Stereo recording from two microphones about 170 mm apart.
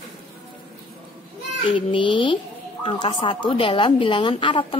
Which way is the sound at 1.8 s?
30° left (ahead or behind).